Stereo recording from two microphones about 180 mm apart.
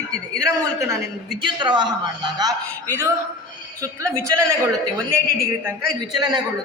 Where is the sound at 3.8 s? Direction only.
15° right (ahead or behind).